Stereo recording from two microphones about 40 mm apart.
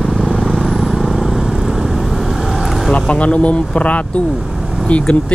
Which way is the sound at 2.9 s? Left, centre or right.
Left.